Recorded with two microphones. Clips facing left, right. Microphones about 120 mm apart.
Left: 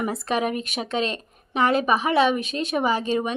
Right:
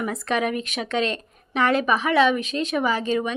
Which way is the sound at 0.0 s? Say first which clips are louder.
Even; 30° left (ahead or behind).